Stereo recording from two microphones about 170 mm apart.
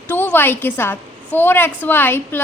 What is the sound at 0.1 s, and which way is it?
A woman's voice, 10° left (ahead or behind).